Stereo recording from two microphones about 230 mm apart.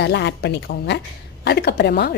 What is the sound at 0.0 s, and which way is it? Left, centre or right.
A woman's voice, left.